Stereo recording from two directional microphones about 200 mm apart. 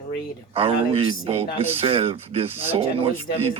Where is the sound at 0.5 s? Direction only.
30° right (ahead or behind).